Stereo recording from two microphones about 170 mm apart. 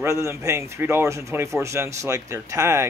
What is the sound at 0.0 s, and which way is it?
Speech, 15° right (ahead or behind).